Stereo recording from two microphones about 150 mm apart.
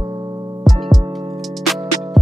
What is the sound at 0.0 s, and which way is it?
Music, 25° right (ahead or behind).